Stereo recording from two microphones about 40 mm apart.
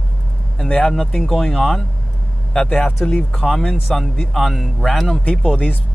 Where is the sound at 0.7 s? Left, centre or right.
Left.